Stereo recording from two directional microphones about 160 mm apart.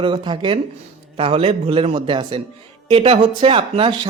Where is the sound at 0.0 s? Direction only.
30° right (ahead or behind).